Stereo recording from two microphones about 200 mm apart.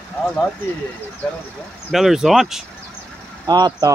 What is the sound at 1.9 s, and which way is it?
Speech, centre (ahead or behind).